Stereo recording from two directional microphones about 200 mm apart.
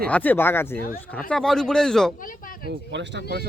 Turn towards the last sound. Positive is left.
turn(degrees=-55)  # may be behind; listen again after turning